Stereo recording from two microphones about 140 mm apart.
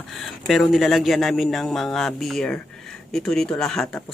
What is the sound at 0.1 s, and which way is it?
Speech, centre (ahead or behind).